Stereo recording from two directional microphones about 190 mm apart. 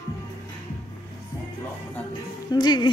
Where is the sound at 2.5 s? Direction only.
20° left (ahead or behind).